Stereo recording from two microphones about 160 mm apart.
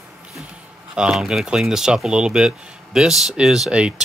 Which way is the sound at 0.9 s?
5° right (ahead or behind).